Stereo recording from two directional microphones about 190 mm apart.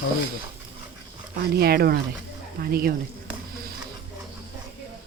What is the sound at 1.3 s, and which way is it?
Speech, 55° right (ahead or behind).